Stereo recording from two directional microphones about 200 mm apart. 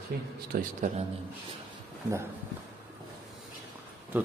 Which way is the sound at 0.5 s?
40° right (ahead or behind).